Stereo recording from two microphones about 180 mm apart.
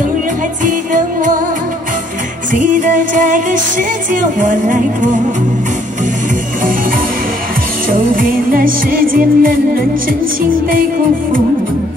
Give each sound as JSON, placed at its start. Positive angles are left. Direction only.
{"t": 0.7, "sound": "music", "side_deg": -45}
{"t": 2.5, "sound": "music", "side_deg": -45}
{"t": 7.9, "sound": "music", "side_deg": -50}